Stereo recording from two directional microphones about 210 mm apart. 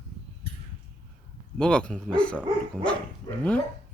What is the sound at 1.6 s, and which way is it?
Speech, 5° left (ahead or behind).